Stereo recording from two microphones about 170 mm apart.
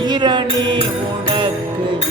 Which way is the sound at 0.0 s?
25° right (ahead or behind).